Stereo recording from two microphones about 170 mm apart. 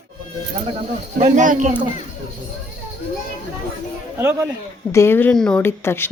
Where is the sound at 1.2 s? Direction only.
40° right (ahead or behind).